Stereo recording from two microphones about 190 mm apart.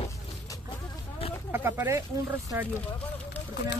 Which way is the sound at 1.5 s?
10° right (ahead or behind).